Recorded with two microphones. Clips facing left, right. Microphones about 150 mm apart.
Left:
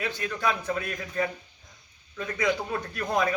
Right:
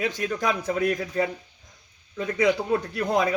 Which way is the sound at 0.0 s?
40° right (ahead or behind).